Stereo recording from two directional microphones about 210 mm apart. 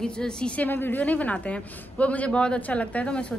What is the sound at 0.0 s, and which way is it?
A woman's voice, 5° left (ahead or behind).